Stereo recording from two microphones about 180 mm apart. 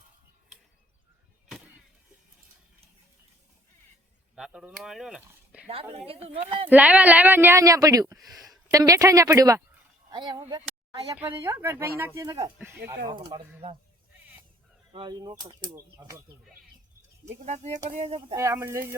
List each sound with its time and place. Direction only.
4.4 s speech: 5° right (ahead or behind)
6.2 s speech: 30° right (ahead or behind)
6.7 s speech: 10° right (ahead or behind)
13.1 s speech: 25° right (ahead or behind)
14.9 s speech: 25° right (ahead or behind)
17.4 s speech: 40° right (ahead or behind)
18.3 s speech: 15° right (ahead or behind)